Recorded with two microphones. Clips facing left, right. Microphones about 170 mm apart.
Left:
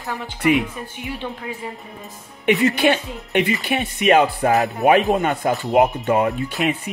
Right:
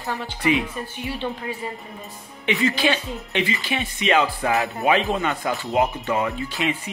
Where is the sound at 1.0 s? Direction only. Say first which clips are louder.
Even; 15° left (ahead or behind).